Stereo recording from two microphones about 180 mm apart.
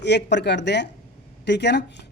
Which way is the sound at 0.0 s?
70° left (ahead or behind).